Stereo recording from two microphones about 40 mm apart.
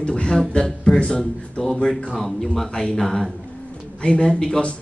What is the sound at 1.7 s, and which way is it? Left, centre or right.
Speech, centre.